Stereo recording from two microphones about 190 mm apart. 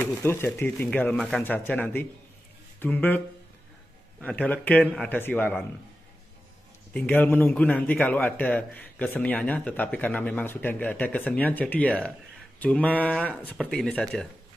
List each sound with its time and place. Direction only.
0.0 s a man's voice: 10° left (ahead or behind)
4.2 s a man's voice: 5° left (ahead or behind)
6.9 s a man's voice: 10° left (ahead or behind)